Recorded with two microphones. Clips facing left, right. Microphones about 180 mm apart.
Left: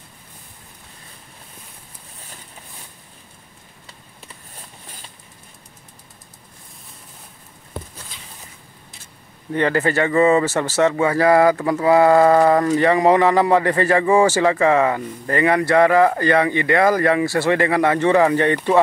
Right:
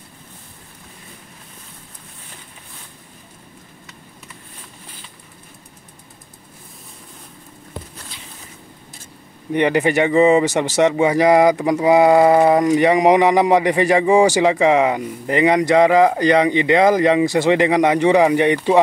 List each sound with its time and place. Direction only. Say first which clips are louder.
9.5 s speech: right 2 dB; 15° right (ahead or behind)